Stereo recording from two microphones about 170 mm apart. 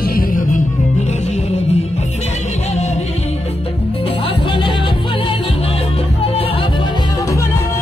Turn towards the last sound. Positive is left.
turn(degrees=30)  # may be behind; listen again after turning